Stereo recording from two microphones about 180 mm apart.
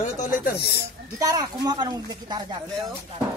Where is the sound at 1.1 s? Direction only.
20° right (ahead or behind).